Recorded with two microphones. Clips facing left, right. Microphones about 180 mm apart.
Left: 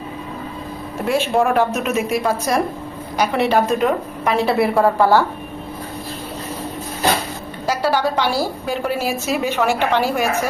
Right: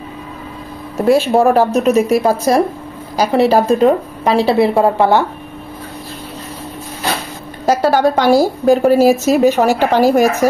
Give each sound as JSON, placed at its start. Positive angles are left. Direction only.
{"t": 1.0, "sound": "a woman's voice", "side_deg": -35}
{"t": 7.6, "sound": "a woman's voice", "side_deg": -45}